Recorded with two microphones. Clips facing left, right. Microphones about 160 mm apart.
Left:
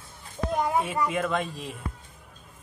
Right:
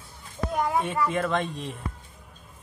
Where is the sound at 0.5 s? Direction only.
25° left (ahead or behind).